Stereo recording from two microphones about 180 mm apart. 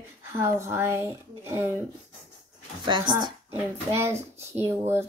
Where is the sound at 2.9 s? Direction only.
25° right (ahead or behind).